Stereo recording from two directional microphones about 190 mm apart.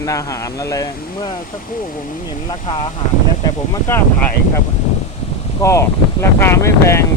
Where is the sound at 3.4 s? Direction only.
20° left (ahead or behind).